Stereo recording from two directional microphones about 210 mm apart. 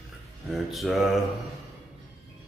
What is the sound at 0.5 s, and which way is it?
Speech, centre (ahead or behind).